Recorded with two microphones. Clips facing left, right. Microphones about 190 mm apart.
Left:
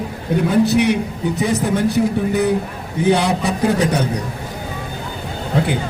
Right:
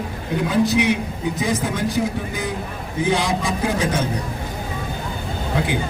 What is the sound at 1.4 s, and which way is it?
A man's voice, 65° left (ahead or behind).